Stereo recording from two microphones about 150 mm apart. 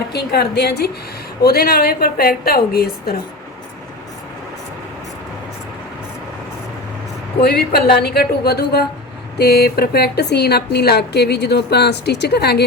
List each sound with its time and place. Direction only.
0.1 s a woman's voice: 90° left
7.4 s a woman's voice: 90° left